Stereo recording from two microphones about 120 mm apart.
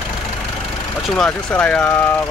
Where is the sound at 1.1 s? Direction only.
10° left (ahead or behind).